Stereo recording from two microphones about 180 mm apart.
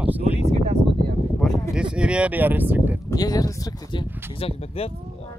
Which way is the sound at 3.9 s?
30° left (ahead or behind).